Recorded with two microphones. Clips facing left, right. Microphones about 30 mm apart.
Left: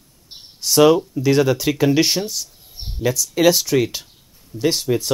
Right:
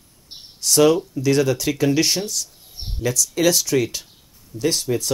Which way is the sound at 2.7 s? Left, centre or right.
Centre.